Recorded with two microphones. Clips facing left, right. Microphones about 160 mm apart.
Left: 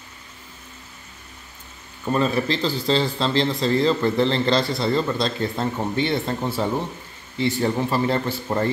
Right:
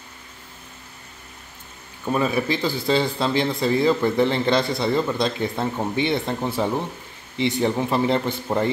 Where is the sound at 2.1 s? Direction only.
10° right (ahead or behind).